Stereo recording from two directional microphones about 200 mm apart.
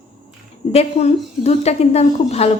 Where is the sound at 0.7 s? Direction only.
30° left (ahead or behind).